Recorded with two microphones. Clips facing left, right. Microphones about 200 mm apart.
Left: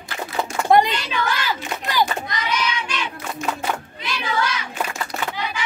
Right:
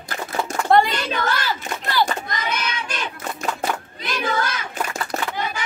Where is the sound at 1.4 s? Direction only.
15° left (ahead or behind).